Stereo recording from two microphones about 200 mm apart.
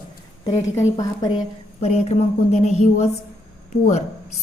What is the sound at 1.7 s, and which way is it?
Speech, 30° left (ahead or behind).